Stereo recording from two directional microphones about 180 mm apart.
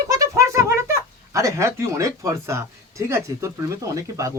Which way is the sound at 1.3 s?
15° right (ahead or behind).